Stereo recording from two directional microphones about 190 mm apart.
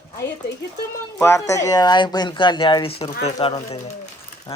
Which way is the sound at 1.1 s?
15° left (ahead or behind).